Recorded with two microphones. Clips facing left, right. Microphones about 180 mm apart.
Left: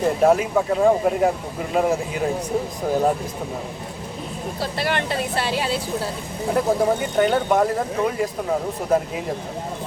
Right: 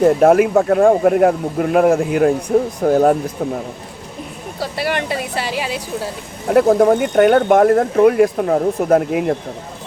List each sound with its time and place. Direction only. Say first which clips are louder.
0.2 s speech: right 6 dB; 60° right (ahead or behind)
4.8 s speech: right 3 dB; 10° right (ahead or behind)
6.5 s speech: right 8 dB; 65° right (ahead or behind)